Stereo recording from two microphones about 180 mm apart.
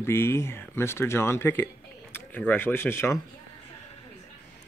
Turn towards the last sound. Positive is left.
turn(degrees=15)  # may be behind; listen again after turning